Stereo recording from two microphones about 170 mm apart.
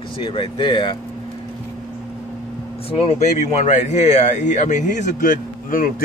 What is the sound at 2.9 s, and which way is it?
A man's voice, 35° left (ahead or behind).